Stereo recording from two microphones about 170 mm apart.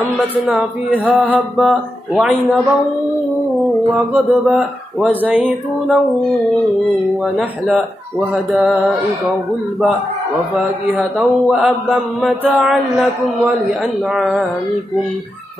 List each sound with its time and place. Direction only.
0.9 s speech: 10° right (ahead or behind)
3.9 s speech: centre (ahead or behind)
7.3 s speech: 5° right (ahead or behind)
10.5 s speech: 5° right (ahead or behind)
14.1 s speech: centre (ahead or behind)